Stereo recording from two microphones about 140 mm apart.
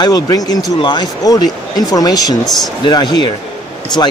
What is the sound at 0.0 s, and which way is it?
Speech, 30° left (ahead or behind).